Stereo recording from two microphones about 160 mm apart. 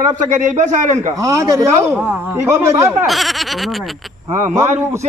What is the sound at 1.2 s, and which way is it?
A man's voice, 20° right (ahead or behind).